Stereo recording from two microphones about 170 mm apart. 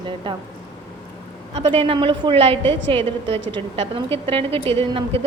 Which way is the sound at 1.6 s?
30° right (ahead or behind).